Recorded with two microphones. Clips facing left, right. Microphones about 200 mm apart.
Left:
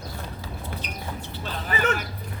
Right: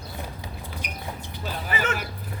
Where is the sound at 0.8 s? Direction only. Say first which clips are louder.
Left 1 dB; 10° right (ahead or behind).